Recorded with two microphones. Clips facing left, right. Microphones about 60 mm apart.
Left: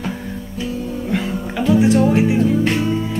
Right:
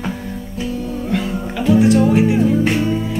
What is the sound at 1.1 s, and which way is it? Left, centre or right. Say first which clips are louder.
Music: right 1 dB; centre.